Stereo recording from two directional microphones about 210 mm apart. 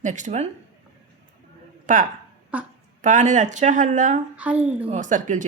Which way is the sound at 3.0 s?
35° right (ahead or behind).